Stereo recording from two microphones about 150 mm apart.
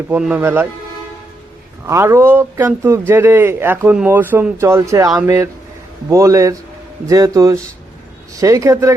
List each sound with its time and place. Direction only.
0.1 s speech: 10° right (ahead or behind)
1.9 s speech: 20° right (ahead or behind)